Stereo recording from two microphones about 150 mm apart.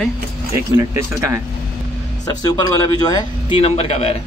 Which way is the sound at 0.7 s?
20° right (ahead or behind).